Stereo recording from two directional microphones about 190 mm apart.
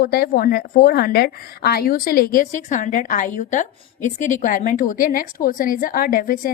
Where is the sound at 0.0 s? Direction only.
50° left (ahead or behind).